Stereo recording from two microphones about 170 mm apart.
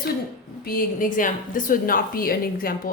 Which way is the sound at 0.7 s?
55° left (ahead or behind).